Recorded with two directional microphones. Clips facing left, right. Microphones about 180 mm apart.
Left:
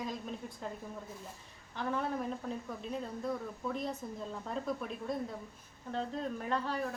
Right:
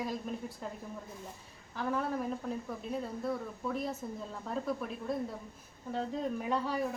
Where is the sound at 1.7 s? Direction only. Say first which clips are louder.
Right 1 dB; 5° right (ahead or behind).